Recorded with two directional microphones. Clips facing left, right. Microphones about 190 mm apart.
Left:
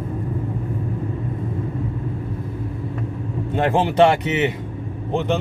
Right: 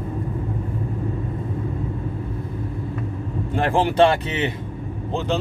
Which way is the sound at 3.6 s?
20° left (ahead or behind).